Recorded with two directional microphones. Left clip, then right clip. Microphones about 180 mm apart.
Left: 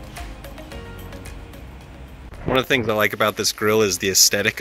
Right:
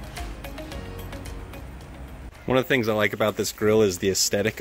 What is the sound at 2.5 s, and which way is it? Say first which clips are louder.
Speech: left 3 dB; 15° right (ahead or behind).